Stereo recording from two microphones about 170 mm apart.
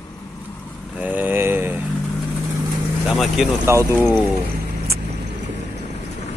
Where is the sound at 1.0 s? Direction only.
10° right (ahead or behind).